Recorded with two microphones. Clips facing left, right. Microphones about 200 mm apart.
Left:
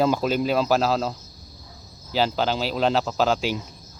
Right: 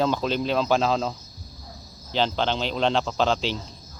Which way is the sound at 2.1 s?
5° left (ahead or behind).